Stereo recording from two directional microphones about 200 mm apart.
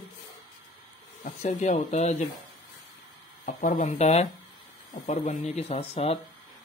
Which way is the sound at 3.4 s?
45° left (ahead or behind).